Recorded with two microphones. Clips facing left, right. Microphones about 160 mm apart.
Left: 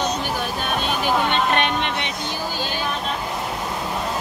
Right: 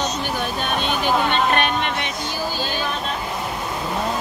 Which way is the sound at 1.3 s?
20° left (ahead or behind).